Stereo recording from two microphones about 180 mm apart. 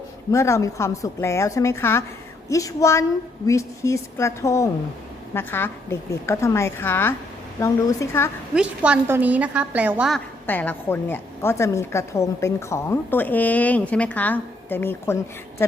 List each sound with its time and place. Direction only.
0.3 s a woman's voice: 15° left (ahead or behind)
8.5 s a woman's voice: 5° right (ahead or behind)
10.4 s a woman's voice: 10° left (ahead or behind)